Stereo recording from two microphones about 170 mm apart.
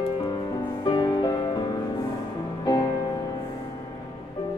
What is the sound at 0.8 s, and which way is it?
Music, 25° left (ahead or behind).